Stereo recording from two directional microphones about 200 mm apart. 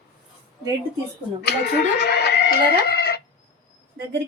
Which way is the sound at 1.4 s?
55° left (ahead or behind).